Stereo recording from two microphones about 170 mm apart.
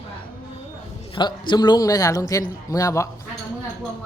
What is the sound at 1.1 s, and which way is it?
A man's voice, 25° left (ahead or behind).